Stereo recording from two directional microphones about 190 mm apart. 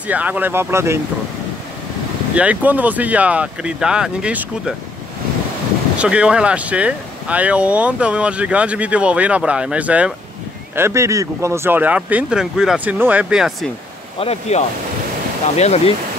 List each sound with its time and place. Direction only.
0.1 s speech: 10° right (ahead or behind)
2.3 s speech: 5° right (ahead or behind)
5.9 s speech: 5° right (ahead or behind)
14.2 s speech: 30° left (ahead or behind)